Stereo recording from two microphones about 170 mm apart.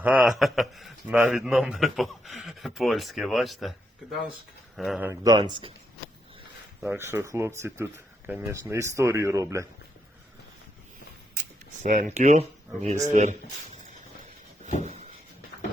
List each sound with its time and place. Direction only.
0.0 s a man's voice: 10° right (ahead or behind)
4.8 s a man's voice: centre (ahead or behind)
5.0 s speech: 20° right (ahead or behind)
6.9 s speech: 15° right (ahead or behind)
11.8 s speech: 45° right (ahead or behind)
14.8 s a sound: 40° right (ahead or behind)